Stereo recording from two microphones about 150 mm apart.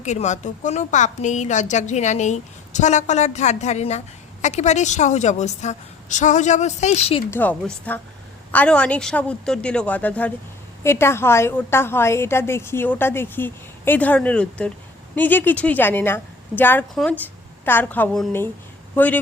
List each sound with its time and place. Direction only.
0.0 s a woman's voice: 50° left (ahead or behind)
7.3 s a woman's voice: 10° left (ahead or behind)